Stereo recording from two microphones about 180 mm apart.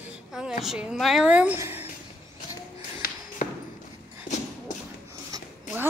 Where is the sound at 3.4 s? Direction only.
45° left (ahead or behind).